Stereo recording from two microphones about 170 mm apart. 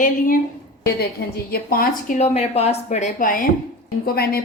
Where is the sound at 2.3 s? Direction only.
40° left (ahead or behind).